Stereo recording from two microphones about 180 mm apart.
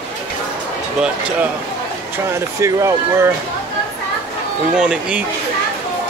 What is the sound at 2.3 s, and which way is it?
Speech, 15° right (ahead or behind).